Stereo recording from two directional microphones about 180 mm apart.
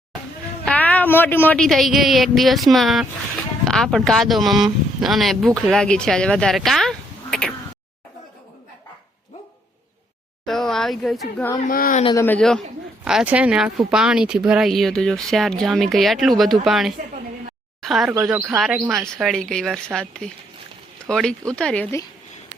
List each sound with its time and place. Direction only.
0.6 s a woman's voice: 10° left (ahead or behind)
10.4 s speech: centre (ahead or behind)
11.7 s speech: 50° left (ahead or behind)
12.1 s a man's voice: 10° left (ahead or behind)